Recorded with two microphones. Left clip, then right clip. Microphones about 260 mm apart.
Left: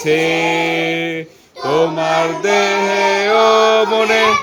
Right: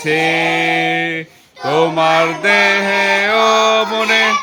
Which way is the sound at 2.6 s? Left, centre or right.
Centre.